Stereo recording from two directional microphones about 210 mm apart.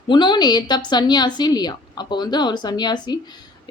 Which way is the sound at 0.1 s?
20° left (ahead or behind).